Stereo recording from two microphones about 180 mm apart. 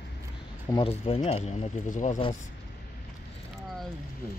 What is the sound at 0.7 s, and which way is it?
Speech, 30° left (ahead or behind).